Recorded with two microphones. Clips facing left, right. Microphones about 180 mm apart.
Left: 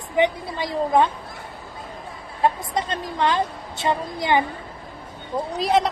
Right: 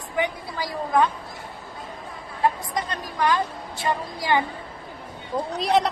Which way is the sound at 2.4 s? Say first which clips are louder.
Left 2 dB; 25° left (ahead or behind).